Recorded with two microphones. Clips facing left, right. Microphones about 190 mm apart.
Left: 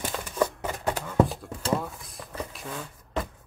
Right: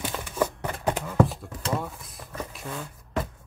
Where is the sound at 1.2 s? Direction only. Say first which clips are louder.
Right 5 dB; centre (ahead or behind).